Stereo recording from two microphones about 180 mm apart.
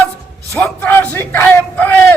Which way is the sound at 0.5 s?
10° left (ahead or behind).